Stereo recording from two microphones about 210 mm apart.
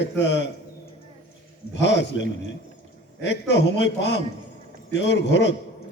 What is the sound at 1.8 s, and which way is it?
A man's voice, 55° left (ahead or behind).